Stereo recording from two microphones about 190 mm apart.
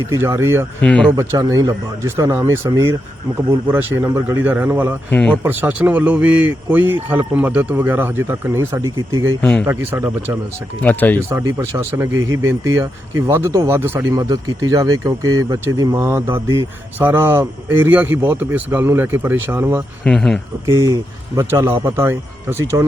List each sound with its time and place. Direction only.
0.1 s speech: 10° right (ahead or behind)
0.8 s speech: 5° left (ahead or behind)
1.1 s speech: 15° right (ahead or behind)
5.1 s speech: 5° left (ahead or behind)
5.4 s speech: 10° right (ahead or behind)
8.8 s speech: 90° right
9.4 s speech: 5° left (ahead or behind)
9.6 s speech: 10° right (ahead or behind)
10.8 s speech: 10° left (ahead or behind)
11.3 s speech: 15° right (ahead or behind)
20.1 s speech: 5° left (ahead or behind)
20.7 s speech: 15° right (ahead or behind)